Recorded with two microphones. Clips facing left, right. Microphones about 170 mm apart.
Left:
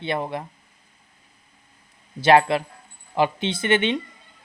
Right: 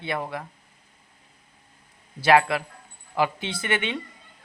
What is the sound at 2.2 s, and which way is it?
Speech, 25° left (ahead or behind).